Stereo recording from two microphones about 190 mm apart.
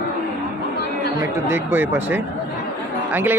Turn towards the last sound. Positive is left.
turn(degrees=-10)  # may be behind; listen again after turning